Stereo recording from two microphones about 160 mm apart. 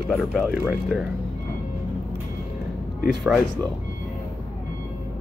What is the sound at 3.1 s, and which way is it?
Speech, centre (ahead or behind).